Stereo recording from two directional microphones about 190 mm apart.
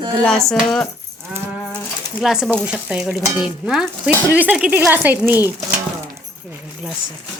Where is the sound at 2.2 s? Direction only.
5° right (ahead or behind).